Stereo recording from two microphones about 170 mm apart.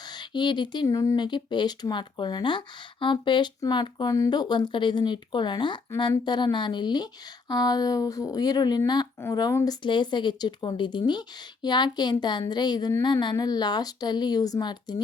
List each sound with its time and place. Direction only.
0.1 s speech: 25° left (ahead or behind)